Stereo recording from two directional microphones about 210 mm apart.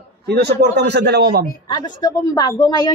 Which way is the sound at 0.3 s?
50° right (ahead or behind).